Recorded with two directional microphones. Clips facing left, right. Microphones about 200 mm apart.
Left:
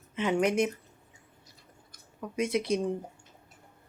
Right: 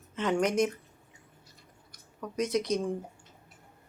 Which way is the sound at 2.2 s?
5° left (ahead or behind).